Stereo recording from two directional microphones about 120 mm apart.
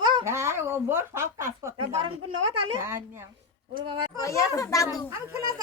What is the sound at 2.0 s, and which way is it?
Speech, 45° right (ahead or behind).